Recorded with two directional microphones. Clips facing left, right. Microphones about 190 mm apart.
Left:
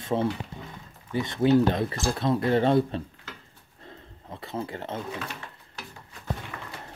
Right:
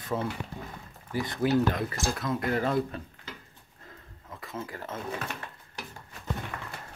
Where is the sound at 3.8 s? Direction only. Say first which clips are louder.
Left 5 dB; 30° left (ahead or behind).